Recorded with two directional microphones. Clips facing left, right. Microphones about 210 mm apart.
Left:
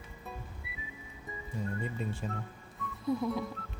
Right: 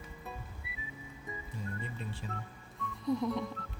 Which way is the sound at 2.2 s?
45° left (ahead or behind).